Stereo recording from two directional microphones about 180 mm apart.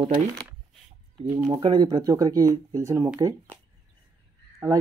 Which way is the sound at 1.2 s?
20° right (ahead or behind).